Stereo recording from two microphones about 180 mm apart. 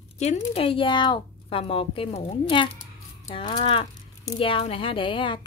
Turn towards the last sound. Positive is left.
turn(degrees=30)  # may be behind; listen again after turning